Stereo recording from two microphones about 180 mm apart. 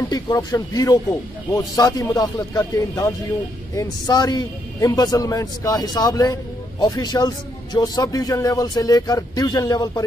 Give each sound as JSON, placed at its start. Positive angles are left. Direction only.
{"t": 0.1, "sound": "a man's voice", "side_deg": 20}